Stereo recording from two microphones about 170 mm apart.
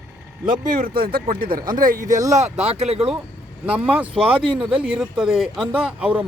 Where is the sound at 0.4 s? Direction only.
55° right (ahead or behind).